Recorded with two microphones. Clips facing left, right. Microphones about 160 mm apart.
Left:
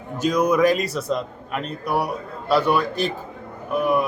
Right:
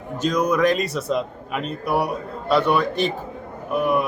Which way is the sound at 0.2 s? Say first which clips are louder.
Left 1 dB; 5° left (ahead or behind).